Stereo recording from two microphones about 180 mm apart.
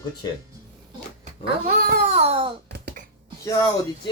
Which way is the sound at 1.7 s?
55° right (ahead or behind).